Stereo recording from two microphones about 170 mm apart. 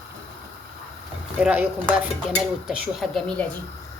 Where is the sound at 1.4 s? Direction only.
10° right (ahead or behind).